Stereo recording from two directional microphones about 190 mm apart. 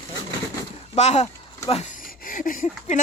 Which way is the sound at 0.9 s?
35° left (ahead or behind).